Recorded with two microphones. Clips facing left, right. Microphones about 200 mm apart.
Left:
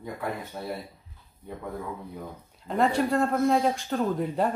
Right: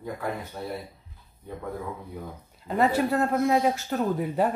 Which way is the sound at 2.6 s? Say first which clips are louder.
Right 1 dB; 5° right (ahead or behind).